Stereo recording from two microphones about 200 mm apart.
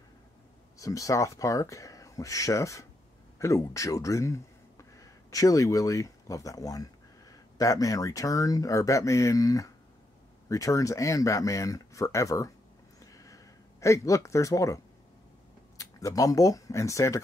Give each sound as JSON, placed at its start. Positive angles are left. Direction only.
{"t": 0.7, "sound": "speech", "side_deg": 15}
{"t": 13.0, "sound": "a sound", "side_deg": 15}
{"t": 15.8, "sound": "speech", "side_deg": 15}